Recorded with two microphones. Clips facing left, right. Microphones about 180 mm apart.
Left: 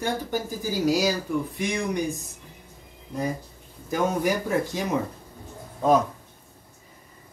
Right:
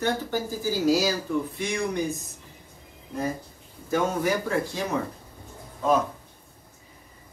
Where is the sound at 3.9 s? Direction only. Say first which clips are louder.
Even; 15° left (ahead or behind).